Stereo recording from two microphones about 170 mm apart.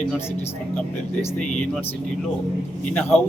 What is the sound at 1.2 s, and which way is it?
Speech, 5° left (ahead or behind).